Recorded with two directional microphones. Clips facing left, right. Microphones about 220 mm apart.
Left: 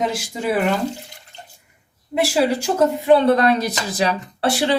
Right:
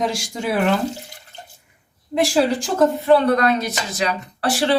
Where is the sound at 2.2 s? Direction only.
5° left (ahead or behind).